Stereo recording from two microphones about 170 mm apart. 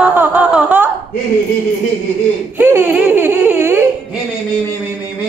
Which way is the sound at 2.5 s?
10° right (ahead or behind).